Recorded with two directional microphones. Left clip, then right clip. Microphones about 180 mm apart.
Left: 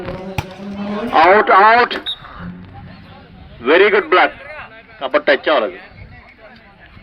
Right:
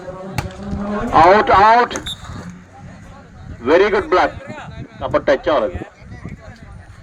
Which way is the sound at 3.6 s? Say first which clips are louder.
Left 2 dB; 90° right.